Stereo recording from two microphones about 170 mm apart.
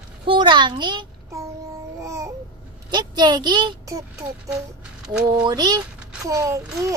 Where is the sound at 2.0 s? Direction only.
20° right (ahead or behind).